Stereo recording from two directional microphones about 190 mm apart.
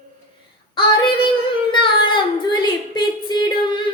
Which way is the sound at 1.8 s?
25° left (ahead or behind).